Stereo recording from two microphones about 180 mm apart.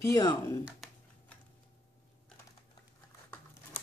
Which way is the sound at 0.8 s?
Centre (ahead or behind).